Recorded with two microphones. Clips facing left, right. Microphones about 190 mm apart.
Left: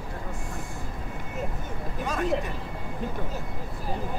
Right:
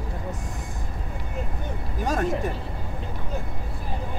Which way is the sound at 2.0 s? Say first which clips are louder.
Right 4 dB; 40° right (ahead or behind).